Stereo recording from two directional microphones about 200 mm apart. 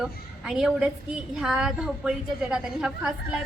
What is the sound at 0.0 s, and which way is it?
A woman's voice, centre (ahead or behind).